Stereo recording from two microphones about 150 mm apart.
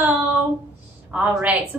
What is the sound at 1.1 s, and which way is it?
Speech, 10° right (ahead or behind).